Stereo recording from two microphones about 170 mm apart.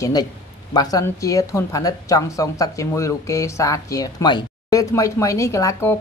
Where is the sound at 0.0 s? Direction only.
20° left (ahead or behind).